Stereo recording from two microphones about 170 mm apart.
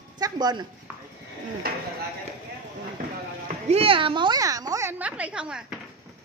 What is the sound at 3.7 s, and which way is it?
A woman's voice, 35° right (ahead or behind).